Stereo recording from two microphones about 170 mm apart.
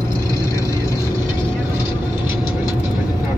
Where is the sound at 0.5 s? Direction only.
15° left (ahead or behind).